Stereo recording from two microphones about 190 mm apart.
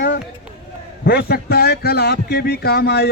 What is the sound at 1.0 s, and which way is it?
A man's voice, 55° left (ahead or behind).